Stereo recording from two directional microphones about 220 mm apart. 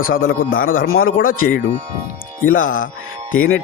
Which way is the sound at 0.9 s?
65° left (ahead or behind).